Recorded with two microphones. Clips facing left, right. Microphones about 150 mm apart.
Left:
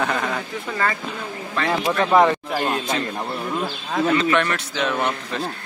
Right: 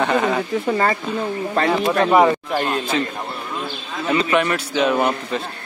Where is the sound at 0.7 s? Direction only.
35° right (ahead or behind).